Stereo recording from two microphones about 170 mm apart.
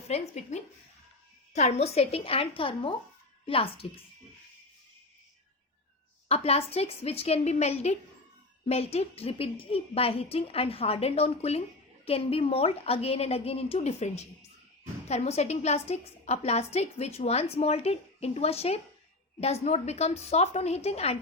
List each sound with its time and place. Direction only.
0.1 s a woman's voice: 40° left (ahead or behind)
6.2 s a woman's voice: 35° left (ahead or behind)